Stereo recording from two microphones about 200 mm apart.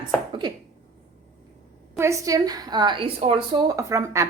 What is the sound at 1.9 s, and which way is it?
A woman's voice, 15° right (ahead or behind).